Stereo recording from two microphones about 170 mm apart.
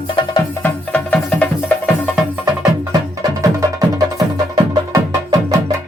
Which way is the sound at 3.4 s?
20° right (ahead or behind).